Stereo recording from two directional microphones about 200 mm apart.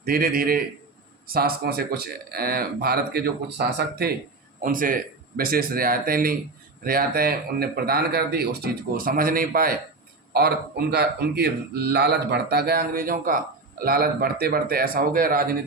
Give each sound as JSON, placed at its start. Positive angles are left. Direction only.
{"t": 0.0, "sound": "speech", "side_deg": -45}
{"t": 4.6, "sound": "speech", "side_deg": -45}